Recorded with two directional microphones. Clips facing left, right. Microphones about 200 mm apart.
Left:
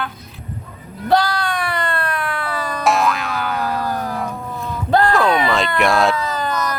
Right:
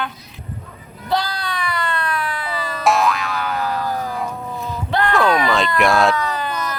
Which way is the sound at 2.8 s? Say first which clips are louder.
Right 1 dB; centre (ahead or behind).